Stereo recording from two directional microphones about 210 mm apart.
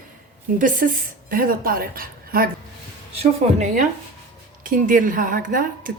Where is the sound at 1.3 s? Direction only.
45° right (ahead or behind).